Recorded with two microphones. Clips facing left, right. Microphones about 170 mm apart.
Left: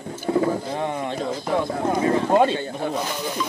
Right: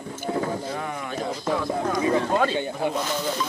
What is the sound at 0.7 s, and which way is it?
Speech, 30° left (ahead or behind).